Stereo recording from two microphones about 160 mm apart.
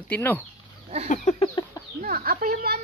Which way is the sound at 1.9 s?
60° right (ahead or behind).